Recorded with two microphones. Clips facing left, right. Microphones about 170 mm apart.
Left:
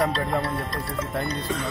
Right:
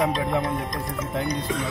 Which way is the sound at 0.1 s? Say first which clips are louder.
Right 1 dB; 10° right (ahead or behind).